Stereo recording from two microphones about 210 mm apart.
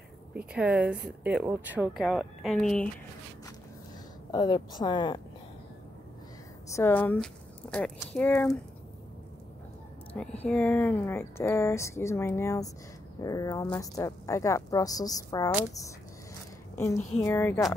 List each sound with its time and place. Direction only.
0.3 s a woman's voice: 5° right (ahead or behind)
4.3 s a woman's voice: 20° left (ahead or behind)
6.7 s a woman's voice: 10° left (ahead or behind)
10.1 s speech: 5° left (ahead or behind)
17.2 s speech: 10° left (ahead or behind)